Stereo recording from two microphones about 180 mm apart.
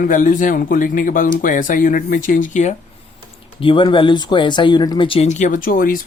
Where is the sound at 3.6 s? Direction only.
30° left (ahead or behind).